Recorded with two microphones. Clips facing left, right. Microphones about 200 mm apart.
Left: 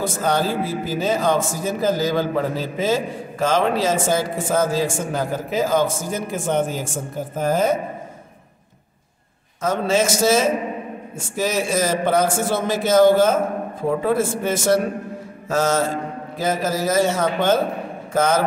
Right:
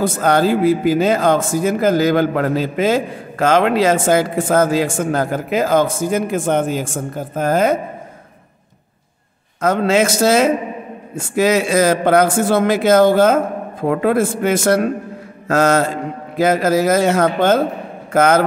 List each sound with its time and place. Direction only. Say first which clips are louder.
0.0 s a man's voice: right 6 dB; 60° right (ahead or behind)
7.3 s speech: right 4 dB; 75° right (ahead or behind)
9.6 s a man's voice: right 5 dB; 60° right (ahead or behind)